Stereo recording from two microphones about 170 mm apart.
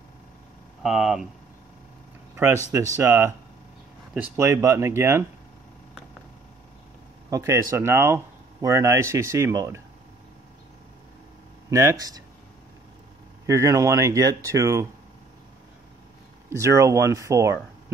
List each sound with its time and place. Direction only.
0.8 s speech: 5° right (ahead or behind)
2.3 s speech: 15° right (ahead or behind)
7.2 s speech: 20° right (ahead or behind)
11.7 s speech: 15° right (ahead or behind)
13.5 s speech: 20° right (ahead or behind)
16.4 s speech: 15° right (ahead or behind)